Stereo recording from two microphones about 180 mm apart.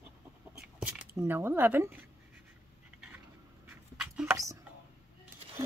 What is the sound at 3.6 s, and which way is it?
Dog, 10° right (ahead or behind).